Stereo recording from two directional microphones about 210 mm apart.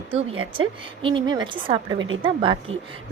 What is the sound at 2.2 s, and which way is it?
Speech, 25° right (ahead or behind).